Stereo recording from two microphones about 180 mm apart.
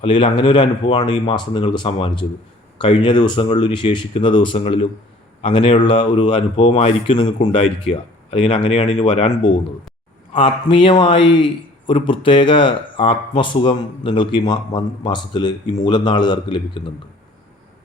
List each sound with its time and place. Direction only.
0.0 s a man's voice: 30° left (ahead or behind)